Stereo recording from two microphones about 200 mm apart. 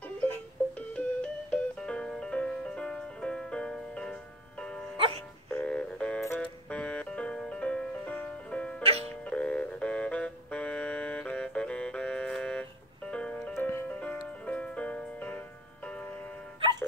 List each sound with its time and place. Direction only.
0.7 s music: 5° left (ahead or behind)
4.9 s music: 25° right (ahead or behind)
5.5 s music: 5° left (ahead or behind)